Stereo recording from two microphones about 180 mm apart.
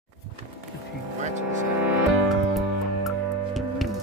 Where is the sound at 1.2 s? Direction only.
40° right (ahead or behind).